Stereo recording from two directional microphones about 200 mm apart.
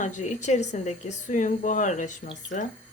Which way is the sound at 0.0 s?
35° left (ahead or behind).